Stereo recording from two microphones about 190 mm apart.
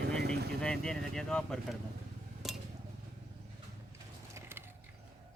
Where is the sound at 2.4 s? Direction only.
Centre (ahead or behind).